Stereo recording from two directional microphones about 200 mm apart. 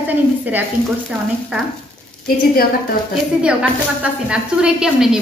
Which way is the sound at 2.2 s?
50° left (ahead or behind).